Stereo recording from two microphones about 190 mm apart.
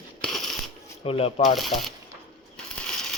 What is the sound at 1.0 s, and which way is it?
Speech, 30° left (ahead or behind).